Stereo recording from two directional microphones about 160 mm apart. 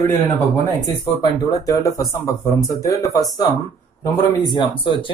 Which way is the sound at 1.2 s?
20° left (ahead or behind).